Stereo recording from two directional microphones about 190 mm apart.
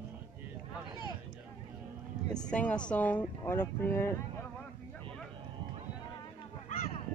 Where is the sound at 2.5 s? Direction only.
5° left (ahead or behind).